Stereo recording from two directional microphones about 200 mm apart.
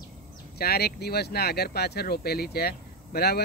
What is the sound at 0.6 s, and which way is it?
Speech, 50° left (ahead or behind).